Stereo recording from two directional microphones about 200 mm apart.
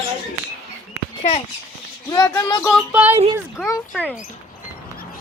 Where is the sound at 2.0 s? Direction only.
20° left (ahead or behind).